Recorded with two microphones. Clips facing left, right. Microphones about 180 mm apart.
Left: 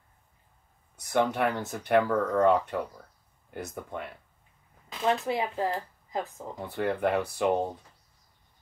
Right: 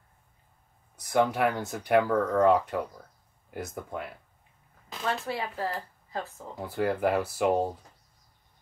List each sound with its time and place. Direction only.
0.9 s speech: centre (ahead or behind)
5.0 s speech: 15° left (ahead or behind)
6.6 s speech: centre (ahead or behind)